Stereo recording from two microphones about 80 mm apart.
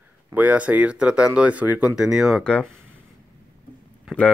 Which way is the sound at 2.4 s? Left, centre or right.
Centre.